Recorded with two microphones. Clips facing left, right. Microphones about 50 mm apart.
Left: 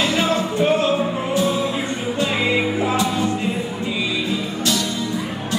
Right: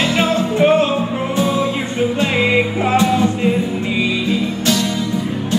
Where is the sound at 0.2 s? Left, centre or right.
Right.